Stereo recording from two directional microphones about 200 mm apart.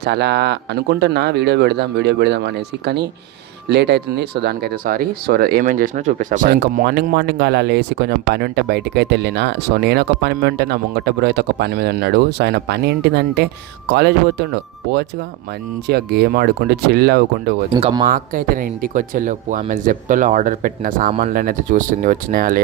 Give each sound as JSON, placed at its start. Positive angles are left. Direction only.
{"t": 0.0, "sound": "speech", "side_deg": -55}
{"t": 15.9, "sound": "speech", "side_deg": -55}
{"t": 17.7, "sound": "speech", "side_deg": -30}
{"t": 18.1, "sound": "speech", "side_deg": -45}